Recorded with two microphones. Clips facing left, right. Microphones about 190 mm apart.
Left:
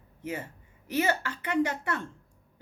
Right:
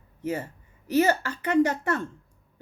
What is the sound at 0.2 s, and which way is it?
A man's voice, 40° right (ahead or behind).